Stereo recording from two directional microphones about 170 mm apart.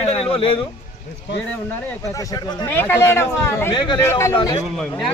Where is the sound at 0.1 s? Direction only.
35° left (ahead or behind).